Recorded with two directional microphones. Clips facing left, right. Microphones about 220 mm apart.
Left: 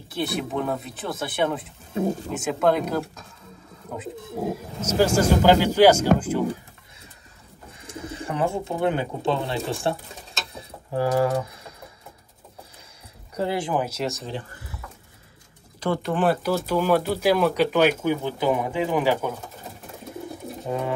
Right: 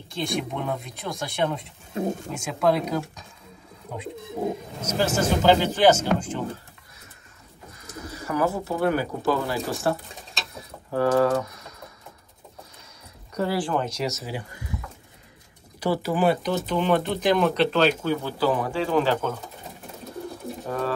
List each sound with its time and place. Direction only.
0.1 s speech: 5° left (ahead or behind)
3.9 s speech: 5° left (ahead or behind)
7.8 s speech: 25° left (ahead or behind)
10.5 s a sound: 30° left (ahead or behind)
13.3 s speech: 25° left (ahead or behind)
13.7 s speech: 5° left (ahead or behind); by 14.8 s 15° right (ahead or behind)
15.8 s speech: 5° right (ahead or behind); by 19.3 s 15° left (ahead or behind)
20.6 s speech: 20° left (ahead or behind)